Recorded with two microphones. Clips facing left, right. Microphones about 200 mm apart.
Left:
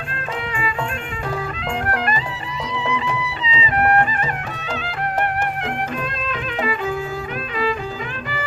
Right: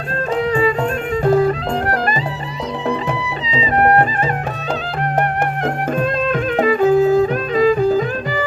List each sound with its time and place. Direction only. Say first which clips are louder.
1.2 s music: right 13 dB; 40° right (ahead or behind)
6.6 s music: right 11 dB; 45° right (ahead or behind)